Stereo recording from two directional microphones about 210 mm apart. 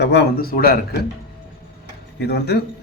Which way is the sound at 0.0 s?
50° left (ahead or behind).